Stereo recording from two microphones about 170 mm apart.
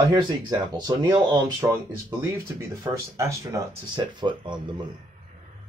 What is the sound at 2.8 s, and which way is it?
Speech, 20° right (ahead or behind).